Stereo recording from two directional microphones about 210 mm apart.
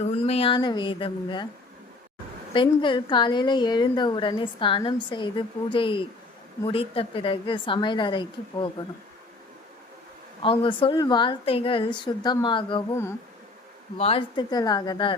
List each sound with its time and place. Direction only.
0.0 s a woman's voice: 30° left (ahead or behind)
2.5 s a woman's voice: 25° left (ahead or behind)
10.4 s a woman's voice: 25° left (ahead or behind)
12.9 s insect: 10° left (ahead or behind)
14.0 s a woman's voice: 25° left (ahead or behind)